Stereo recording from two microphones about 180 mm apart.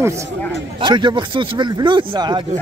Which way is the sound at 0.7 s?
25° right (ahead or behind).